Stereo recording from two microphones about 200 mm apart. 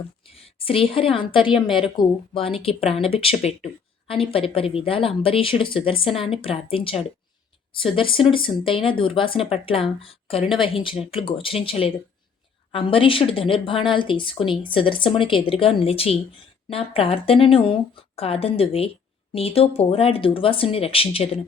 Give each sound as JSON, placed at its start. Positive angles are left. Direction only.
{"t": 0.3, "sound": "speech", "side_deg": 30}